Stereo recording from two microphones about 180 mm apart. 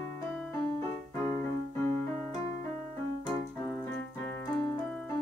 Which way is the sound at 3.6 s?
5° left (ahead or behind).